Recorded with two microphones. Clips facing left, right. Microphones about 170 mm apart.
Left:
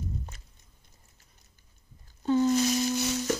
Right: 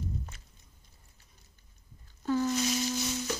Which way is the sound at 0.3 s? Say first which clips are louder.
Left 1 dB; 40° left (ahead or behind).